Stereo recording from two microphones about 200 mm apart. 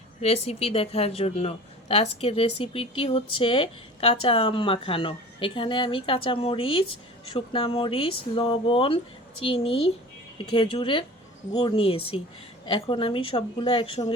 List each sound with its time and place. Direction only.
0.2 s speech: 30° left (ahead or behind)